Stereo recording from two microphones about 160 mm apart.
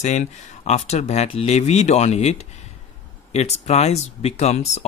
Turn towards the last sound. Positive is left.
turn(degrees=40)  # may be behind; listen again after turning